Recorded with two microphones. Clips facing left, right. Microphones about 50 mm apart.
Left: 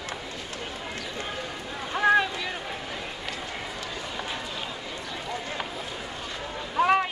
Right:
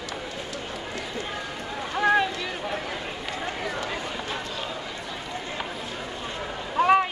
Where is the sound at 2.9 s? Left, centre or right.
Right.